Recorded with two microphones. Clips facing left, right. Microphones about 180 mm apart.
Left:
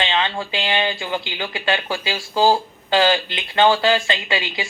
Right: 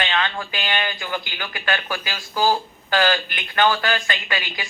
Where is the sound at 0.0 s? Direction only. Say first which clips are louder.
Left 2 dB; 25° left (ahead or behind).